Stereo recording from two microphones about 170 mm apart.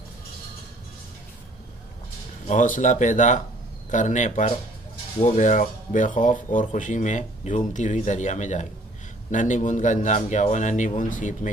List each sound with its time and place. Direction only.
2.4 s speech: 50° left (ahead or behind)